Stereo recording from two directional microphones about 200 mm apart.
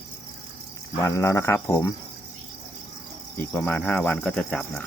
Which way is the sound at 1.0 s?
15° left (ahead or behind).